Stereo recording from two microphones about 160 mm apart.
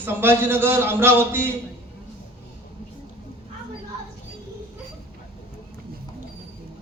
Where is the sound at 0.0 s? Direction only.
15° right (ahead or behind).